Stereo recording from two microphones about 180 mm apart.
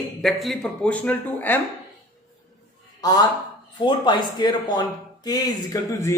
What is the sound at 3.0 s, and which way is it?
A man's voice, 20° left (ahead or behind).